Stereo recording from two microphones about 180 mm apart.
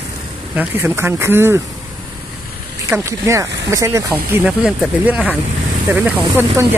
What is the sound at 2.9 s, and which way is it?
Speech, 15° right (ahead or behind).